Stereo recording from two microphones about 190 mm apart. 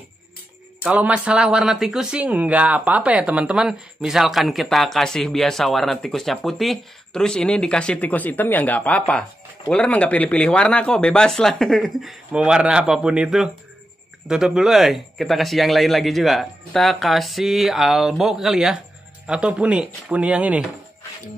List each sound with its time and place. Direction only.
0.8 s speech: 5° right (ahead or behind)